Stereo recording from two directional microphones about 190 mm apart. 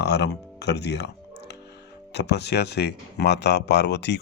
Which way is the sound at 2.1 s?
60° left (ahead or behind).